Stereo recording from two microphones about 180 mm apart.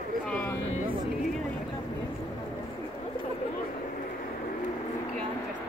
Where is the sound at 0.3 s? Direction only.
5° left (ahead or behind).